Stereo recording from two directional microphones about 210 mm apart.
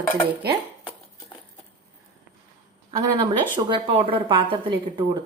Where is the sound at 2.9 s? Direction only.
20° right (ahead or behind).